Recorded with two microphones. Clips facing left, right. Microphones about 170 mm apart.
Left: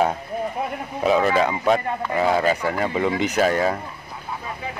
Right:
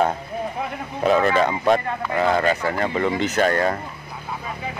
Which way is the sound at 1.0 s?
5° left (ahead or behind).